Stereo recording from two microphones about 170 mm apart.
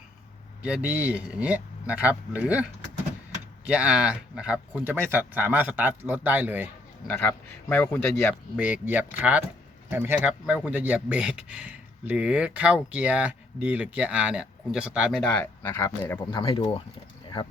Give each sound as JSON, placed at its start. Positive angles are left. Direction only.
{"t": 0.6, "sound": "speech", "side_deg": -5}
{"t": 3.7, "sound": "speech", "side_deg": -5}
{"t": 7.1, "sound": "speech", "side_deg": 10}
{"t": 8.5, "sound": "speech", "side_deg": -10}
{"t": 15.3, "sound": "speech", "side_deg": 10}
{"t": 16.3, "sound": "speech", "side_deg": 30}